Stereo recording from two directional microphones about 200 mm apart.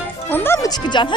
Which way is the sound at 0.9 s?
25° left (ahead or behind).